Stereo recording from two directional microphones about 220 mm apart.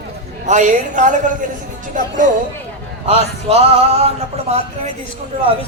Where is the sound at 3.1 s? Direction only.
25° right (ahead or behind).